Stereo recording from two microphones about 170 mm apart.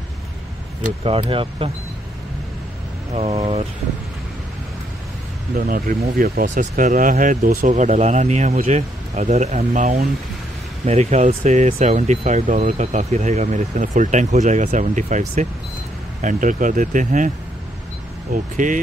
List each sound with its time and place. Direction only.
1.0 s speech: 35° right (ahead or behind)
5.6 s speech: 55° right (ahead or behind)
18.3 s speech: 50° right (ahead or behind)